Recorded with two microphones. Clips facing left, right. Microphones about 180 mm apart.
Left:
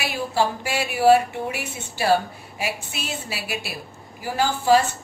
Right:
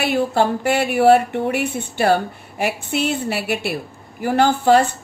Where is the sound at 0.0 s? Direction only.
55° right (ahead or behind).